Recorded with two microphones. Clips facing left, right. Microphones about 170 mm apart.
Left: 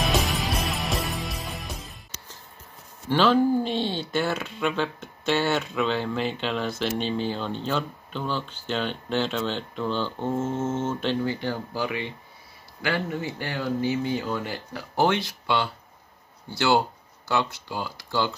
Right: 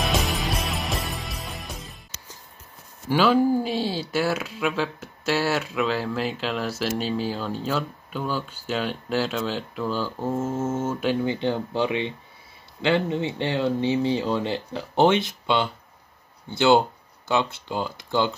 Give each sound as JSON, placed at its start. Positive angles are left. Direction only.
{"t": 0.0, "sound": "music", "side_deg": 0}
{"t": 3.1, "sound": "speech", "side_deg": -10}
{"t": 11.2, "sound": "speech", "side_deg": -20}